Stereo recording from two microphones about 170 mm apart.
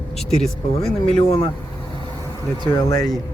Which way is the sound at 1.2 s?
35° left (ahead or behind).